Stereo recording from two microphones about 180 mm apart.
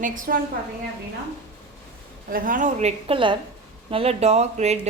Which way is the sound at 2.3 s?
50° right (ahead or behind).